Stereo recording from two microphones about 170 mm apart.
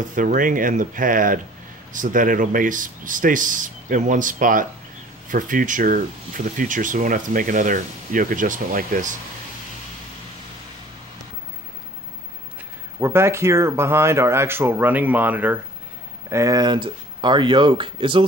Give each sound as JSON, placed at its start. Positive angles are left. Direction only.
{"t": 0.1, "sound": "speech", "side_deg": -50}
{"t": 13.0, "sound": "speech", "side_deg": -15}